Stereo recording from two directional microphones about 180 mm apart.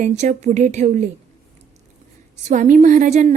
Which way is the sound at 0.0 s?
40° right (ahead or behind).